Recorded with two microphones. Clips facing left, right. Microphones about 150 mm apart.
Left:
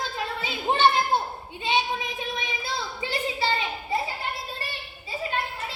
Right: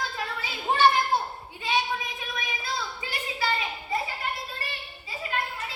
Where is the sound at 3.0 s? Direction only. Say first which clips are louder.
Left 6 dB; 30° left (ahead or behind).